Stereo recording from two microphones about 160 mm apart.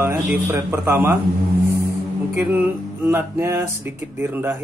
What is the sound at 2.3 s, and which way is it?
Music, 15° right (ahead or behind).